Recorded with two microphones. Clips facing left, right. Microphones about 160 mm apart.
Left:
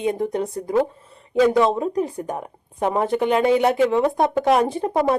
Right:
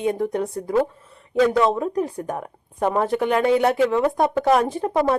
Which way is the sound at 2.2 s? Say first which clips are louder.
Even; 15° left (ahead or behind).